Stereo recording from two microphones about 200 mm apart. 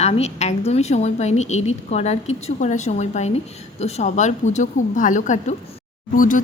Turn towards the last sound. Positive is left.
turn(degrees=40)  # may be behind; listen again after turning